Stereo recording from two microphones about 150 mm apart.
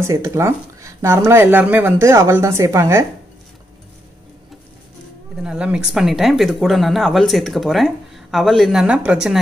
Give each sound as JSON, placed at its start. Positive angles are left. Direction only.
{"t": 0.0, "sound": "speech", "side_deg": -20}
{"t": 5.4, "sound": "speech", "side_deg": -5}